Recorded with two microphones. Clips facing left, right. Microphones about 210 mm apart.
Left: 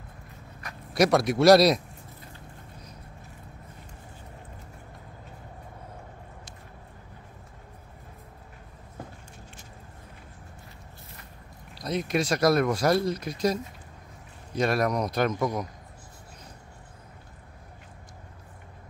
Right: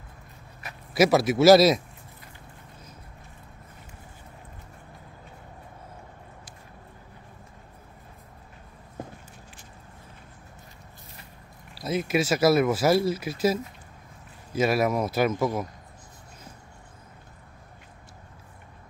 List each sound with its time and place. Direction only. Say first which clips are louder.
0.9 s speech: right 2 dB; 5° right (ahead or behind)
11.7 s speech: right 2 dB; 5° right (ahead or behind)